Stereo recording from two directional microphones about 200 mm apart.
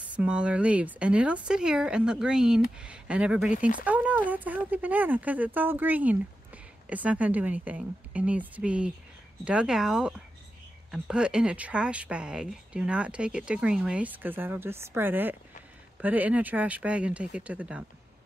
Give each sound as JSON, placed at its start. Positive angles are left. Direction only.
{"t": 0.1, "sound": "speech", "side_deg": -5}
{"t": 3.5, "sound": "speech", "side_deg": 40}
{"t": 3.8, "sound": "speech", "side_deg": -5}